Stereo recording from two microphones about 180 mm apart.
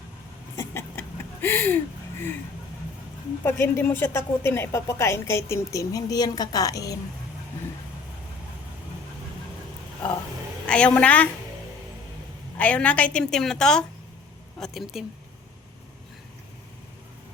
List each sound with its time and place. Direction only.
0.5 s a sound: 15° left (ahead or behind)
3.4 s a woman's voice: 15° left (ahead or behind)
10.7 s a woman's voice: 5° left (ahead or behind)
12.5 s a woman's voice: 5° left (ahead or behind)